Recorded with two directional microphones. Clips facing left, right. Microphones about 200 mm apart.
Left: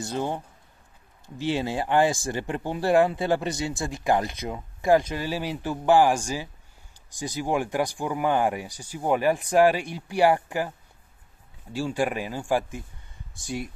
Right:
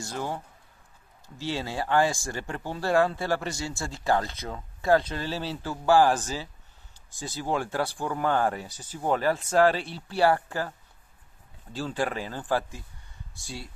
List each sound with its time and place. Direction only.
0.0 s speech: 20° left (ahead or behind)
1.4 s speech: 15° left (ahead or behind)
11.7 s speech: 15° left (ahead or behind)